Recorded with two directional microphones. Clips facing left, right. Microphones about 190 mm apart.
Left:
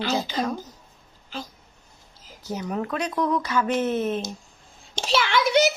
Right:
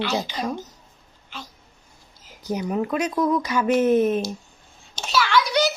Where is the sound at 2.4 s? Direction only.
15° right (ahead or behind).